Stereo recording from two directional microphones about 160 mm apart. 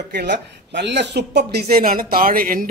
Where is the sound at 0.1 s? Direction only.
90° right.